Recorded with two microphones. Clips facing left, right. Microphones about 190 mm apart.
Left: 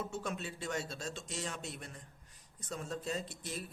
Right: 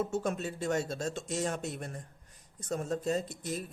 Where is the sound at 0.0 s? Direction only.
45° right (ahead or behind).